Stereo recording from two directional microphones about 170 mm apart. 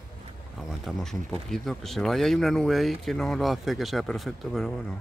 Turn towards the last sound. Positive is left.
turn(degrees=0)  # may be behind; listen again after turning